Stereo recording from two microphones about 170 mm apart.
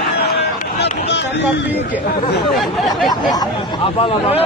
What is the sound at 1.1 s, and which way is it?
Speech, 90° left.